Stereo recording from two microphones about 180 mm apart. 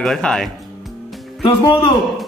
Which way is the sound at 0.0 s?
5° left (ahead or behind).